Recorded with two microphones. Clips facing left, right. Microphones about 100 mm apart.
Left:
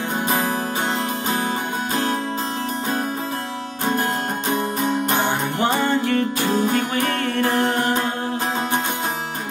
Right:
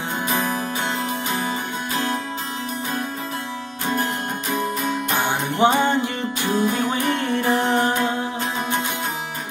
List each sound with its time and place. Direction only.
5.6 s music: 20° right (ahead or behind)